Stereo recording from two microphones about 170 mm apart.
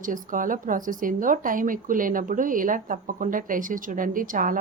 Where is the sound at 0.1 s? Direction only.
50° right (ahead or behind).